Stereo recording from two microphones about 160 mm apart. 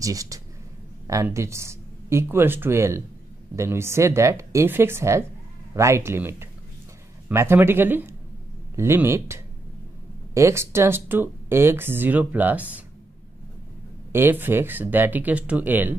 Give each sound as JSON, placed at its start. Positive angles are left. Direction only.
{"t": 0.0, "sound": "speech", "side_deg": -20}
{"t": 14.1, "sound": "speech", "side_deg": -15}